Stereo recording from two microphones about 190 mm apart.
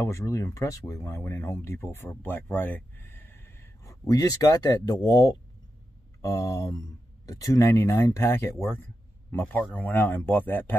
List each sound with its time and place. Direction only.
0.0 s speech: 15° left (ahead or behind)